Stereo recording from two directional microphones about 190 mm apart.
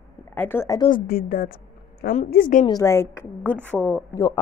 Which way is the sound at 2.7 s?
15° left (ahead or behind).